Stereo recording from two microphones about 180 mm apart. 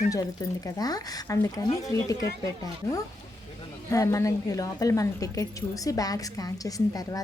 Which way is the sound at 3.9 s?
15° left (ahead or behind).